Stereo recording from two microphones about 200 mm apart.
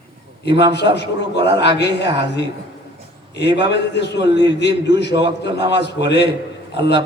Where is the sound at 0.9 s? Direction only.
60° left (ahead or behind).